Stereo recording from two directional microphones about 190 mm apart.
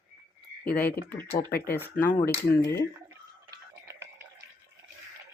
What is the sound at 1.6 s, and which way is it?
Speech, 10° left (ahead or behind).